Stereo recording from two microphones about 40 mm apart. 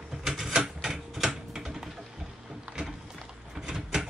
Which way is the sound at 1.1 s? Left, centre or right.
Centre.